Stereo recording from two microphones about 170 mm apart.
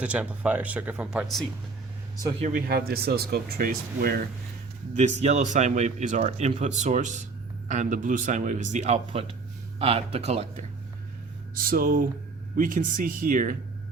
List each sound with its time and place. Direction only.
0.0 s speech: 5° right (ahead or behind)
2.4 s speech: 55° right (ahead or behind)
4.9 s speech: 45° right (ahead or behind)
11.5 s speech: 55° right (ahead or behind)